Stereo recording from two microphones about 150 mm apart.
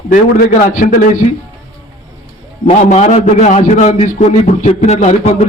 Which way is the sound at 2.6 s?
45° left (ahead or behind).